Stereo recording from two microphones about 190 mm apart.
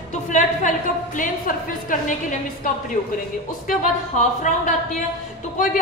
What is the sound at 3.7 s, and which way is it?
A woman's voice, 40° left (ahead or behind).